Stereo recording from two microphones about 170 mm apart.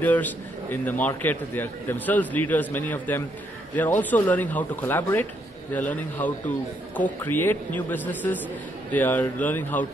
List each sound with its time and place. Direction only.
0.0 s a man's voice: 10° left (ahead or behind)